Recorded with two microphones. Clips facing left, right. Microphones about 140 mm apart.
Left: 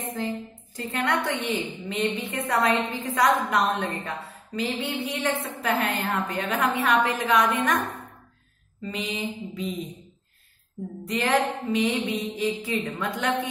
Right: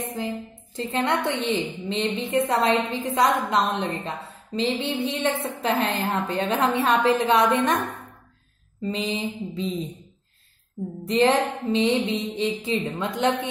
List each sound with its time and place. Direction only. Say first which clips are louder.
0.7 s a woman's voice: right 2 dB; 25° right (ahead or behind)
8.8 s a woman's voice: right 4 dB; 30° right (ahead or behind)
11.1 s a woman's voice: right 4 dB; 25° right (ahead or behind)